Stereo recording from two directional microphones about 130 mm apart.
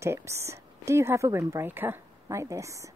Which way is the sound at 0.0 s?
20° right (ahead or behind).